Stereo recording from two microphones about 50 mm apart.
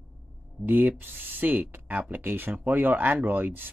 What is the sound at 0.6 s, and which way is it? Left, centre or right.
Speech, right.